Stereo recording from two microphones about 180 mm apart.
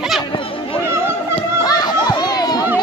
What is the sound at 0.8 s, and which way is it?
Chatter, 15° right (ahead or behind).